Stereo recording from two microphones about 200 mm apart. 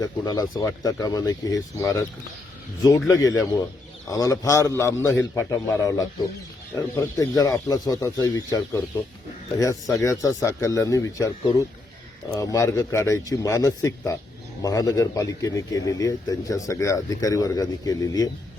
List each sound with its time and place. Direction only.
0.0 s a man's voice: 20° left (ahead or behind)
3.1 s a man's voice: 15° left (ahead or behind)